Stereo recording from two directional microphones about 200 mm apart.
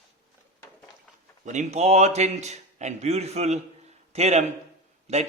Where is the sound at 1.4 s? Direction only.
35° right (ahead or behind).